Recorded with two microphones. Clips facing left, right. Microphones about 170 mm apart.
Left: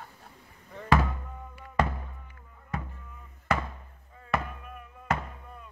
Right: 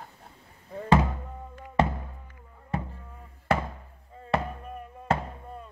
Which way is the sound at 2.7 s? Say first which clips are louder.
Right 4 dB; 30° right (ahead or behind).